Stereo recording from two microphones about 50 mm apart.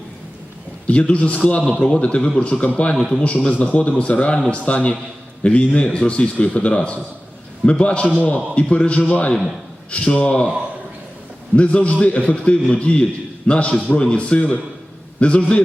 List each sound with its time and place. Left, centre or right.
0.9 s a man's voice: left
2.9 s a man's voice: centre
3.4 s a man's voice: left
11.5 s a man's voice: left